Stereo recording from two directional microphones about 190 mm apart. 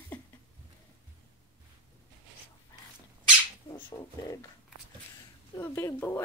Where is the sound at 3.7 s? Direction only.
20° left (ahead or behind).